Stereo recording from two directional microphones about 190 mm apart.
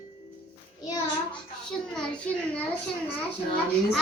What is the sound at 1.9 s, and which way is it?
Child singing, 5° left (ahead or behind).